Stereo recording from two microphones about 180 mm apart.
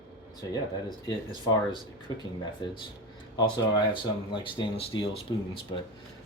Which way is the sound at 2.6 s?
25° left (ahead or behind).